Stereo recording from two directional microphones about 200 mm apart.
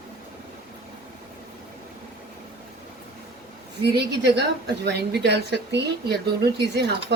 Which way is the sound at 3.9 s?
55° right (ahead or behind).